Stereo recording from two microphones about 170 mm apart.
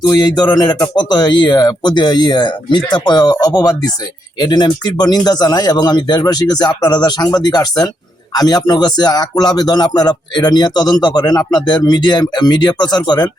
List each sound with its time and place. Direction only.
0.0 s speech: 25° left (ahead or behind)